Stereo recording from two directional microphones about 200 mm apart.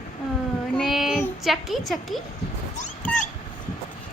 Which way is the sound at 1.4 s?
Centre (ahead or behind).